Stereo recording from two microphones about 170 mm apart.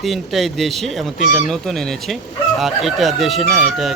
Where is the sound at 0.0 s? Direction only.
Centre (ahead or behind).